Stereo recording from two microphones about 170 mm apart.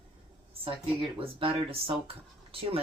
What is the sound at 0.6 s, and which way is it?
Speech, 35° right (ahead or behind).